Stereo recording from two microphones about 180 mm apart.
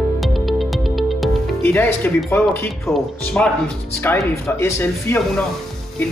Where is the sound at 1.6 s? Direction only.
15° left (ahead or behind).